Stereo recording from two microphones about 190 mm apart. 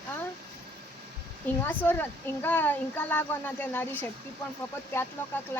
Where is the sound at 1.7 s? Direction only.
10° left (ahead or behind).